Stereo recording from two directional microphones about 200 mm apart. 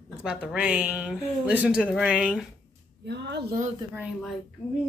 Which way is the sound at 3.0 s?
60° right (ahead or behind).